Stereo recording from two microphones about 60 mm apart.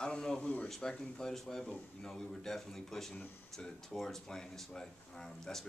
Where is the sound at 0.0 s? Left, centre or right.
Centre.